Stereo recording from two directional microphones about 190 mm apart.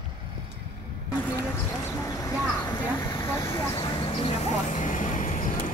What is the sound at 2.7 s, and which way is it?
Vehicle, 15° left (ahead or behind).